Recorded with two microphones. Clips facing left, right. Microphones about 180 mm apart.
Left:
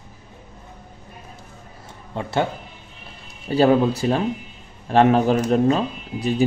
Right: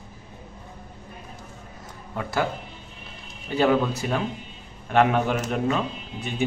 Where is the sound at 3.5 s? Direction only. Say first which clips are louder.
Left 5 dB; 35° left (ahead or behind).